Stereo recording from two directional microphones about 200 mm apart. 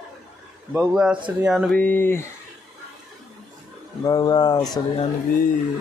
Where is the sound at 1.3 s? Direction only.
5° right (ahead or behind); by 2.3 s 10° left (ahead or behind).